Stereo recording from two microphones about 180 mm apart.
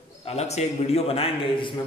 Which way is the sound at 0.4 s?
35° left (ahead or behind).